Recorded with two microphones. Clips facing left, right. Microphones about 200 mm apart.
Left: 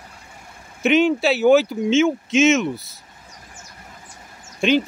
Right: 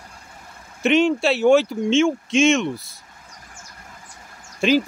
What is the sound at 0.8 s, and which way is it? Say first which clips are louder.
Speech: left 1 dB; centre (ahead or behind).